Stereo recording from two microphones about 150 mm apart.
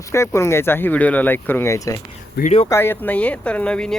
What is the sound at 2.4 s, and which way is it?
Speech, 90° left.